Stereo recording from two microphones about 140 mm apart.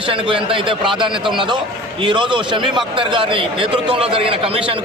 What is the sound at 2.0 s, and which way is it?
A man's voice, 35° right (ahead or behind).